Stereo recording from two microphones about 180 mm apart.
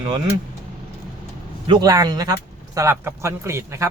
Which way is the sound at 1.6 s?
25° right (ahead or behind).